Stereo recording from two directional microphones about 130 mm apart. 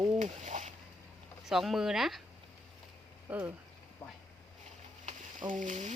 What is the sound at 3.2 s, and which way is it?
Speech, 15° right (ahead or behind).